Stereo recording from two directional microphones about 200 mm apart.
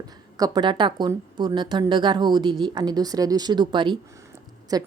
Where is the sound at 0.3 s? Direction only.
20° right (ahead or behind).